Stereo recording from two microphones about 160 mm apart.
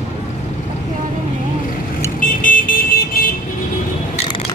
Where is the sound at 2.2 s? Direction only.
60° left (ahead or behind).